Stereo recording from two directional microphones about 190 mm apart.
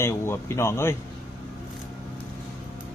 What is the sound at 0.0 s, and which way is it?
Speech, 15° left (ahead or behind).